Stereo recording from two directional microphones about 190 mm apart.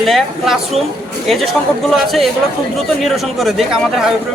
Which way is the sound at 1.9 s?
Centre (ahead or behind).